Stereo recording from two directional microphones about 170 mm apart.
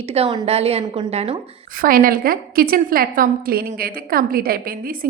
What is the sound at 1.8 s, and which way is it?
A woman's voice, 55° right (ahead or behind).